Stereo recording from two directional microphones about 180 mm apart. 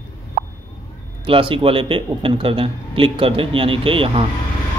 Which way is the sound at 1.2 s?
30° right (ahead or behind).